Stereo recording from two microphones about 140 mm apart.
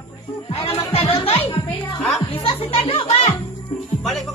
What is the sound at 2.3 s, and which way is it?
Speech, 45° left (ahead or behind).